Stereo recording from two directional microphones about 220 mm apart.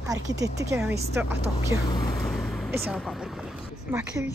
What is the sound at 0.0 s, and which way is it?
Speech, 15° right (ahead or behind).